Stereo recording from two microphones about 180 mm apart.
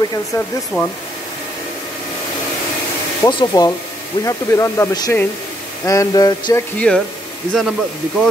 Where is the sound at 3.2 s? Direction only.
20° left (ahead or behind).